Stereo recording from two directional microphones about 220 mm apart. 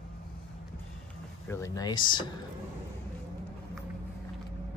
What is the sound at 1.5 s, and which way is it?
Speech, 15° left (ahead or behind).